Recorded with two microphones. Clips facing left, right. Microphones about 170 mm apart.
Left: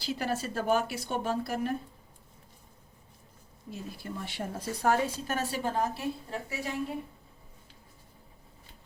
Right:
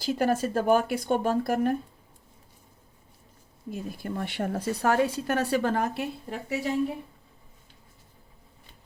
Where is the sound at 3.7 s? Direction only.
55° right (ahead or behind).